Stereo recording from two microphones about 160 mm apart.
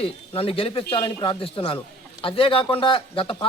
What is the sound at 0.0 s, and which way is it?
Speech, 35° left (ahead or behind).